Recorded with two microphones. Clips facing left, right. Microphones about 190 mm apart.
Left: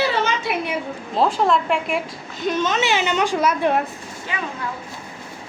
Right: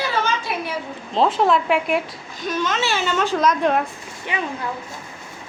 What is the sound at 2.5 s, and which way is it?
A child's voice, 20° left (ahead or behind).